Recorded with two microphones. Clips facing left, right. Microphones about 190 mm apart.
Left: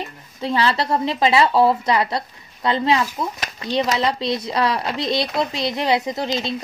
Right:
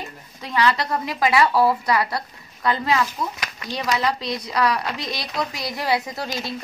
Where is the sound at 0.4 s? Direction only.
30° left (ahead or behind).